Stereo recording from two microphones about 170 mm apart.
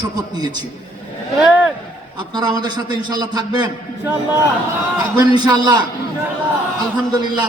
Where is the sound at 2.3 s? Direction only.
25° right (ahead or behind).